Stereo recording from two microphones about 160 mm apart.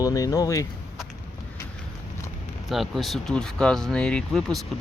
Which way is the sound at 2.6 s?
Centre (ahead or behind).